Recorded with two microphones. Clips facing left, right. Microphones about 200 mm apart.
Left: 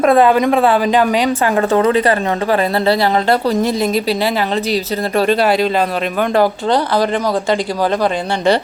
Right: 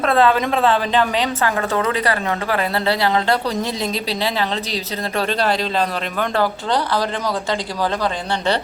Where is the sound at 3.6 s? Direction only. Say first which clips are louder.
Left 7 dB; 50° left (ahead or behind).